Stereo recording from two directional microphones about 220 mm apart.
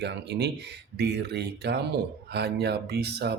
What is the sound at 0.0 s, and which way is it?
Speech, 50° right (ahead or behind).